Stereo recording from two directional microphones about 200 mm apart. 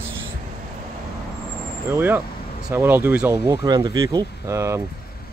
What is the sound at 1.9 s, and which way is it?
Speech, 10° right (ahead or behind).